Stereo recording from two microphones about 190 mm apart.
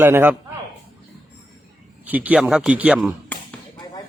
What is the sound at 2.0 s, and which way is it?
A man's voice, 10° right (ahead or behind).